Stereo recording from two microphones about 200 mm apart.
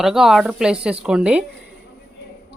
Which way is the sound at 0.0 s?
Centre (ahead or behind).